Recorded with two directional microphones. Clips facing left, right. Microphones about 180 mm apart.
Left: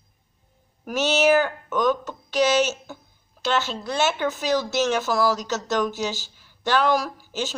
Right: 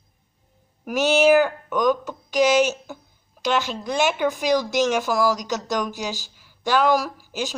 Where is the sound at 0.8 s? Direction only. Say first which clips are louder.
Right 3 dB; 10° right (ahead or behind).